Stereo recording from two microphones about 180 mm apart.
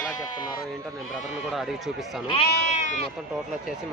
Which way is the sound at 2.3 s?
35° left (ahead or behind).